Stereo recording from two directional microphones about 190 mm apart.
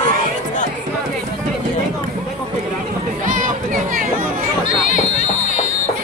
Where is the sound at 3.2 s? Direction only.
45° right (ahead or behind).